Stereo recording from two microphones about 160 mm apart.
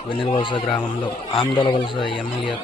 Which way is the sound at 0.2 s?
30° left (ahead or behind).